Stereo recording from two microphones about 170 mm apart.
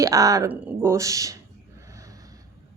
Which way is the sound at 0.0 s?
20° right (ahead or behind).